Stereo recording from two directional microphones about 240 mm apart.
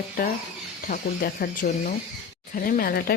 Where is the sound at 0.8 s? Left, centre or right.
Left.